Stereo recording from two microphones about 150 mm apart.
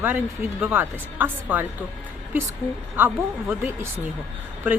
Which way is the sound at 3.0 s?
15° right (ahead or behind).